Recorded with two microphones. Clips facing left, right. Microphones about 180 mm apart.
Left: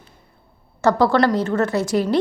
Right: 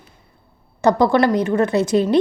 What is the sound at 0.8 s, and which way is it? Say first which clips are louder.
A woman's voice: right 1 dB; 15° right (ahead or behind).